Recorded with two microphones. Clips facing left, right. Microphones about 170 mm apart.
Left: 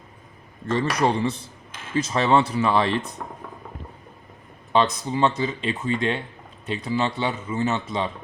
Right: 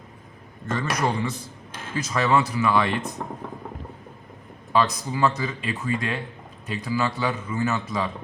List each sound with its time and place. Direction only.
0.7 s a man's voice: 30° left (ahead or behind)
4.7 s a man's voice: 25° left (ahead or behind)